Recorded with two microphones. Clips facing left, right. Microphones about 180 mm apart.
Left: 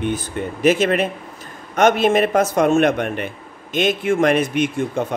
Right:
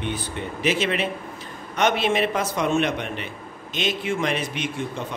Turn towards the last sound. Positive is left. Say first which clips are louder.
# left 9 dB
turn(degrees=50)  # may be behind; listen again after turning